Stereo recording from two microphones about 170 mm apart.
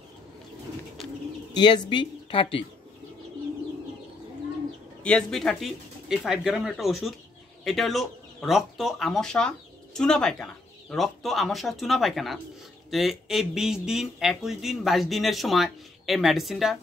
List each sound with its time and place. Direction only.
1.0 s bird: centre (ahead or behind)
1.5 s speech: 25° left (ahead or behind)
5.0 s speech: 5° left (ahead or behind)